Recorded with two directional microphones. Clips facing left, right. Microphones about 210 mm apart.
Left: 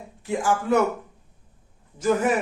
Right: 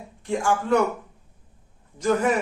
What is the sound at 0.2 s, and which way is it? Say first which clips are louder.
Speech: even; 5° left (ahead or behind).